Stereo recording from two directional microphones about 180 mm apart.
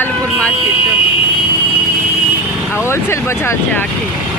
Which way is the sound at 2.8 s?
15° left (ahead or behind).